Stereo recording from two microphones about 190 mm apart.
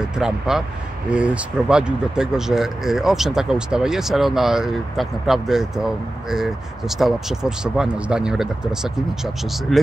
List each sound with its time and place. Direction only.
0.0 s speech: 5° right (ahead or behind)